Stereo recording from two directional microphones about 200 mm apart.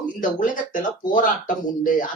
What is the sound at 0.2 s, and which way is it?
Speech, 40° left (ahead or behind).